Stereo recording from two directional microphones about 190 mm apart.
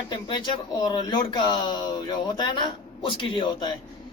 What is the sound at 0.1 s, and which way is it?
Speech, 25° left (ahead or behind).